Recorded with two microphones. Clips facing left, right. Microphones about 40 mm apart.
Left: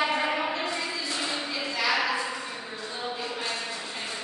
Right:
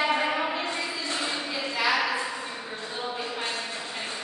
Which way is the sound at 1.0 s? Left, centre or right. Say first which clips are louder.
Right 1 dB; right.